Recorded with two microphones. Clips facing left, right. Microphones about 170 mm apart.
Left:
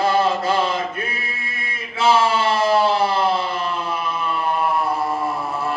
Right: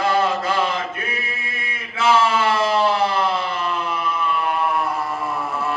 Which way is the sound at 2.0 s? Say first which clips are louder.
Even; 30° left (ahead or behind).